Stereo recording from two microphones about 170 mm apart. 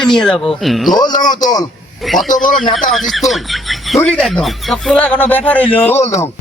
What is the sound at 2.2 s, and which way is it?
Speech, 50° left (ahead or behind).